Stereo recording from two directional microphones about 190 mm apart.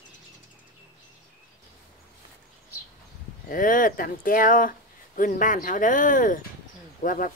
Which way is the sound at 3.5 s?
45° left (ahead or behind).